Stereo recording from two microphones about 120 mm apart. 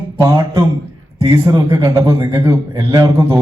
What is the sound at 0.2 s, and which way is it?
A man's voice, 20° right (ahead or behind).